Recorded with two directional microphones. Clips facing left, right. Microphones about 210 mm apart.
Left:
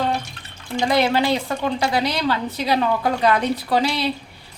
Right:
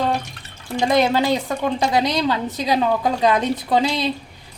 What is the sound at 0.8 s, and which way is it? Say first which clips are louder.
A woman's voice: right 1 dB; 20° right (ahead or behind).